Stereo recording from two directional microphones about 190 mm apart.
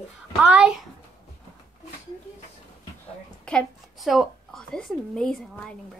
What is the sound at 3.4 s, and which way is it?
A woman's voice, 5° left (ahead or behind).